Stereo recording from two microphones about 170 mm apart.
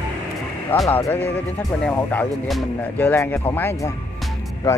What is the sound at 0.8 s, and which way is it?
Speech, 20° left (ahead or behind).